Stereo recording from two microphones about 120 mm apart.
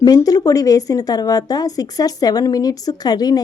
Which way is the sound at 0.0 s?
30° left (ahead or behind).